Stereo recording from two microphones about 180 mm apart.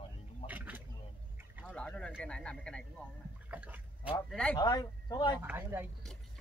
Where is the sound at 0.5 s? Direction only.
10° right (ahead or behind).